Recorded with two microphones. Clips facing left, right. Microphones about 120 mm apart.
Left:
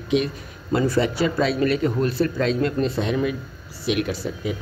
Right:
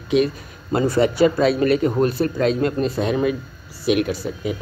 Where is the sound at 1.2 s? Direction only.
40° right (ahead or behind).